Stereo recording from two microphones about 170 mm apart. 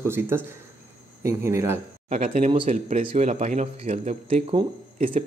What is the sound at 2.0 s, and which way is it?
Speech, 45° right (ahead or behind).